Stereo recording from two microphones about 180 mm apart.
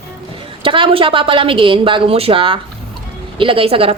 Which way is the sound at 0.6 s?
30° right (ahead or behind).